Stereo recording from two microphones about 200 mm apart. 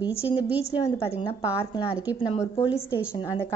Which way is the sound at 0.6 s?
30° left (ahead or behind).